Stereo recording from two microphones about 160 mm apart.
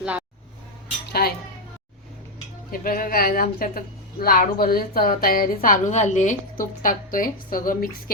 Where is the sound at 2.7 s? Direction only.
60° left (ahead or behind).